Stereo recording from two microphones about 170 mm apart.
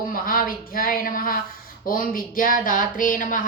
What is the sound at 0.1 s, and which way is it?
Speech, 55° left (ahead or behind).